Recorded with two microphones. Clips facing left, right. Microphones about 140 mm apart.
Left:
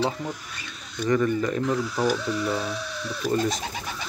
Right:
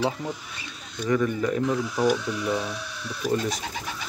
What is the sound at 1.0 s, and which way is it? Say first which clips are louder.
Speech: left 1 dB; 5° right (ahead or behind).